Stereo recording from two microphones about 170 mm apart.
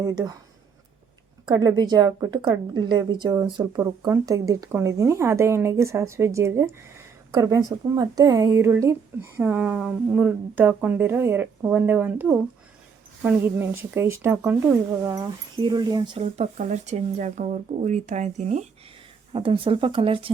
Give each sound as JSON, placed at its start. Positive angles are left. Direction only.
{"t": 0.0, "sound": "a woman's voice", "side_deg": -20}
{"t": 1.5, "sound": "a woman's voice", "side_deg": -25}
{"t": 16.2, "sound": "speech", "side_deg": -40}
{"t": 19.3, "sound": "speech", "side_deg": -30}